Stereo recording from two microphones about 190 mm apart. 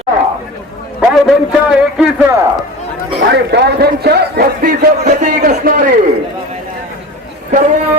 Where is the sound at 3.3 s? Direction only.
60° right (ahead or behind); by 5.9 s 45° right (ahead or behind).